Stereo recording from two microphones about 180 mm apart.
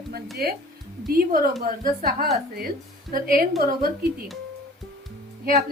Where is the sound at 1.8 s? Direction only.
50° right (ahead or behind).